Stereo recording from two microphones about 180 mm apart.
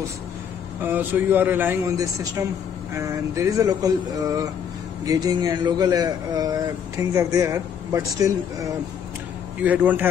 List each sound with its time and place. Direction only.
0.8 s a man's voice: 10° right (ahead or behind)